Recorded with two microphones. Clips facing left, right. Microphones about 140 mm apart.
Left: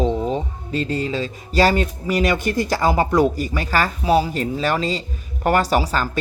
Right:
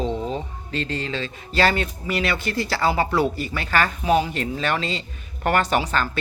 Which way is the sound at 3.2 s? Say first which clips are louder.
Left 5 dB; 40° left (ahead or behind).